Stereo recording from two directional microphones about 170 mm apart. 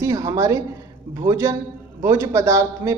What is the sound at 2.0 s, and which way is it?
Speech, 20° right (ahead or behind).